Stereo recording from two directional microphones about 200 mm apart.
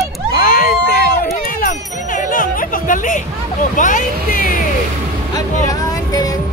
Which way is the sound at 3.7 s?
40° left (ahead or behind).